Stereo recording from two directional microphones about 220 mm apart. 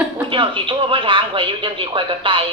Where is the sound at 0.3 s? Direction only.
20° right (ahead or behind).